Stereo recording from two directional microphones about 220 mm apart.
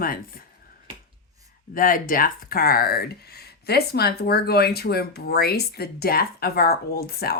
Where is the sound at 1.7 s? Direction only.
40° left (ahead or behind).